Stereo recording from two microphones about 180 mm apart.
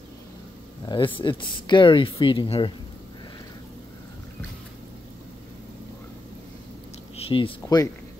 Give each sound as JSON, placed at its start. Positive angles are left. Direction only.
{"t": 0.8, "sound": "speech", "side_deg": 25}
{"t": 7.2, "sound": "speech", "side_deg": 30}
{"t": 7.6, "sound": "speech", "side_deg": 20}